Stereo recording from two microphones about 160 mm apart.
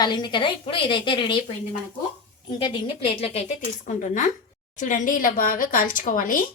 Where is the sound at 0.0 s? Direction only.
25° left (ahead or behind).